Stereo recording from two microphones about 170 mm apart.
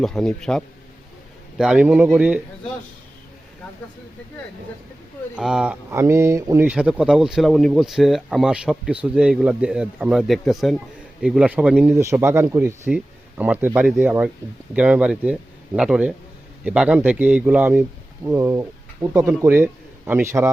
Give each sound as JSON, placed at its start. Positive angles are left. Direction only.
{"t": 0.0, "sound": "a man's voice", "side_deg": 0}
{"t": 5.4, "sound": "speech", "side_deg": -5}
{"t": 5.9, "sound": "speech", "side_deg": -15}
{"t": 11.9, "sound": "a man's voice", "side_deg": -15}